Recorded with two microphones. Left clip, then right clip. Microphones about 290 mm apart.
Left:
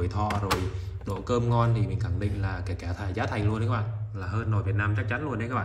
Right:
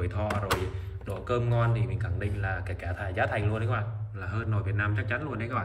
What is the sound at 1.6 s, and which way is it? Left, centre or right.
Speech, centre.